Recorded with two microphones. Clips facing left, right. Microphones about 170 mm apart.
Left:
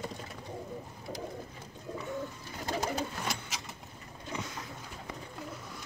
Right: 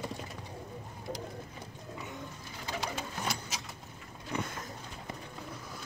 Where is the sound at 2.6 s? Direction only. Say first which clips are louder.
Left 5 dB; 45° left (ahead or behind).